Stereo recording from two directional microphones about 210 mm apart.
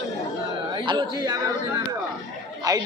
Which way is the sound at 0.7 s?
20° right (ahead or behind).